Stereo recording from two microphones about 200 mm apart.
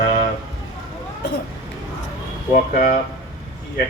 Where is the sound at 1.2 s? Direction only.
55° left (ahead or behind).